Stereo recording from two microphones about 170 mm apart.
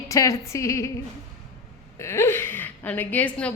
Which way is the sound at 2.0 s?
15° left (ahead or behind).